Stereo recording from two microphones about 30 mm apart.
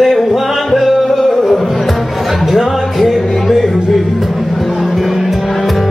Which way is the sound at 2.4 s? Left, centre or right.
Centre.